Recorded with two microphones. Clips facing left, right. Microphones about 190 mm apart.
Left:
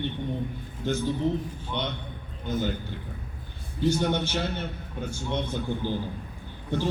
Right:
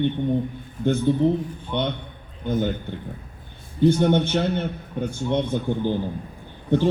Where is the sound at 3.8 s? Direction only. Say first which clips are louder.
Right 7 dB; 55° right (ahead or behind).